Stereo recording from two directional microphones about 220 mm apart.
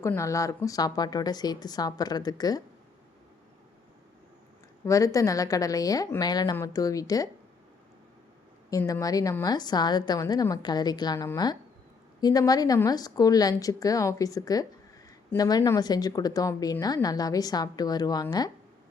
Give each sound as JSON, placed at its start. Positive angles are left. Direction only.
{"t": 0.0, "sound": "a woman's voice", "side_deg": 15}
{"t": 4.9, "sound": "a woman's voice", "side_deg": 15}
{"t": 8.7, "sound": "a woman's voice", "side_deg": 15}